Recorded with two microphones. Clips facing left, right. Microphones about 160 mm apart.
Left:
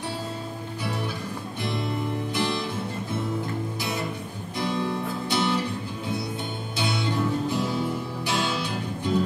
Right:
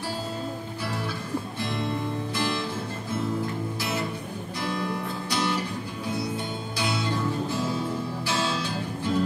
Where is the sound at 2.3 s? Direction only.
20° left (ahead or behind).